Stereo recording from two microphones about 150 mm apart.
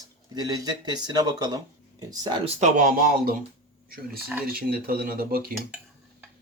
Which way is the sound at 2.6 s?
65° right (ahead or behind).